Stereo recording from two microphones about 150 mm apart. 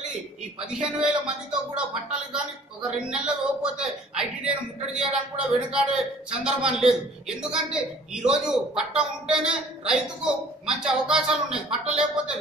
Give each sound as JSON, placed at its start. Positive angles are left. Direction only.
{"t": 0.7, "sound": "speech", "side_deg": -5}
{"t": 3.1, "sound": "a man's voice", "side_deg": -5}